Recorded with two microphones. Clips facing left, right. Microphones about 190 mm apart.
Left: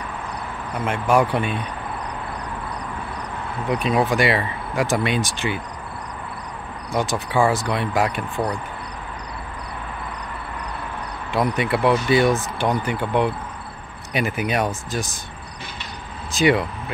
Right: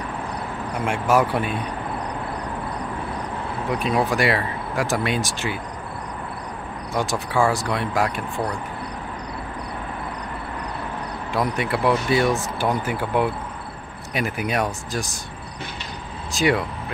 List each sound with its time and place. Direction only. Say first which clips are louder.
0.7 s speech: left 1 dB; 10° right (ahead or behind)
3.6 s speech: left 2 dB; centre (ahead or behind)
6.9 s speech: left 2 dB; centre (ahead or behind)
11.3 s speech: left 2 dB; centre (ahead or behind)
16.3 s speech: left 3 dB; centre (ahead or behind)